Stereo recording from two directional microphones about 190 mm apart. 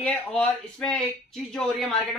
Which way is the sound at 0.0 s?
5° left (ahead or behind).